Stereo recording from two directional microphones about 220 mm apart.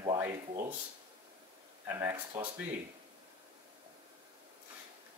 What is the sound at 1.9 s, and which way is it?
Speech, 15° right (ahead or behind).